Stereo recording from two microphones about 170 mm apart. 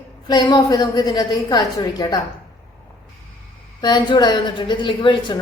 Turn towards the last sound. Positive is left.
turn(degrees=30)  # may be behind; listen again after turning